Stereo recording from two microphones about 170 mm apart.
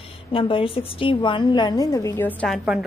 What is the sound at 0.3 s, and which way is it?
A woman's voice, 30° left (ahead or behind).